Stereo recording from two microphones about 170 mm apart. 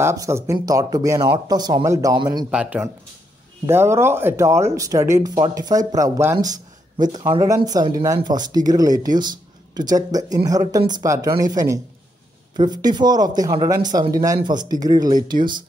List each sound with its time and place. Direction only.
0.0 s speech: 15° right (ahead or behind)
2.5 s speech: 5° right (ahead or behind); by 15.1 s 25° right (ahead or behind)